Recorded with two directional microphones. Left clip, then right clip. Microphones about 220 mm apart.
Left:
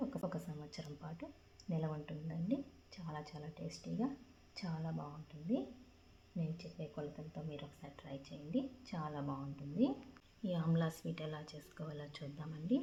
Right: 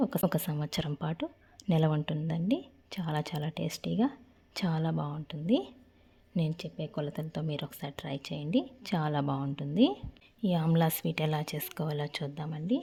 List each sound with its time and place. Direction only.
0.1 s speech: 50° right (ahead or behind)